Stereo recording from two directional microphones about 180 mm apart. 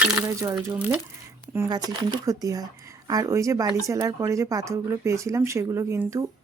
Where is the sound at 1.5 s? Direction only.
20° right (ahead or behind).